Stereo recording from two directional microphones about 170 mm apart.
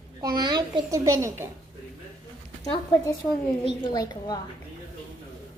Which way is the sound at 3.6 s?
25° left (ahead or behind).